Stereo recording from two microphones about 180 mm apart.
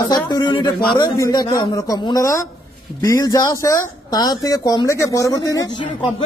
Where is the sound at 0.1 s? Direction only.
25° left (ahead or behind).